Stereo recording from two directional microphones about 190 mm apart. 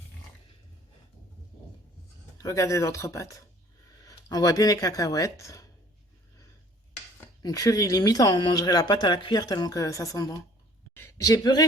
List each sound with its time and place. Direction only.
2.4 s speech: 15° left (ahead or behind)
7.2 s speech: 20° left (ahead or behind)